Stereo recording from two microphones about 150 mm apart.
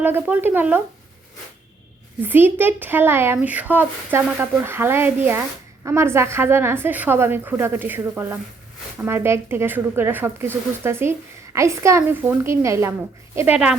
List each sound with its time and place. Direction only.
0.0 s speech: 15° right (ahead or behind)
2.2 s speech: 15° right (ahead or behind)